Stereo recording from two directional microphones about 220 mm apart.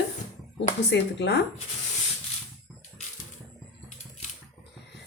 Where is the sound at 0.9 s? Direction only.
50° left (ahead or behind).